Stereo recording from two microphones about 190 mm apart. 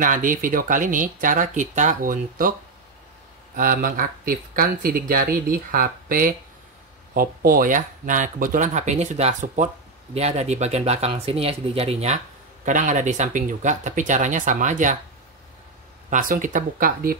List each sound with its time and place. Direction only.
0.0 s speech: 45° right (ahead or behind)
3.5 s speech: 45° right (ahead or behind)
16.1 s speech: 45° right (ahead or behind)